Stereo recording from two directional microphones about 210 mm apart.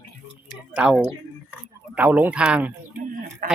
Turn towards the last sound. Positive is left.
turn(degrees=-40)  # may be behind; listen again after turning